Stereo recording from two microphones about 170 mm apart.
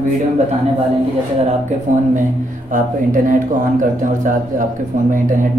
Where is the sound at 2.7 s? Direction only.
50° right (ahead or behind).